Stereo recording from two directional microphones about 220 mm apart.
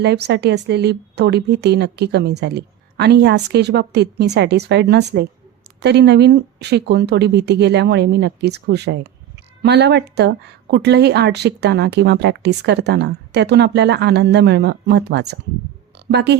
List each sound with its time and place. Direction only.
0.0 s a woman's voice: 50° right (ahead or behind)